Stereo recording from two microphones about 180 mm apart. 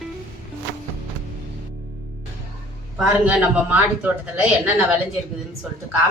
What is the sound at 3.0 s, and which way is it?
A man's voice, 10° right (ahead or behind).